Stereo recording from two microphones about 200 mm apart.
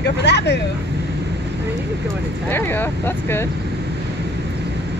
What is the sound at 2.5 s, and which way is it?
Speech, 10° left (ahead or behind).